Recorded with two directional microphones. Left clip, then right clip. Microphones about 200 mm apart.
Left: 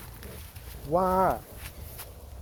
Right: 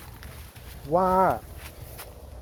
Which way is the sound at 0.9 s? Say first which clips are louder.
Right 3 dB; 15° left (ahead or behind).